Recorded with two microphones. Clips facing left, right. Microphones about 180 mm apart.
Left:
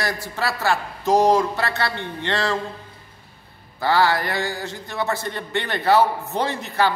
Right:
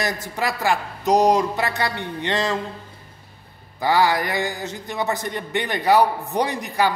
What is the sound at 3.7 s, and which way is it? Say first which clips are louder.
A man's voice: even; 15° right (ahead or behind).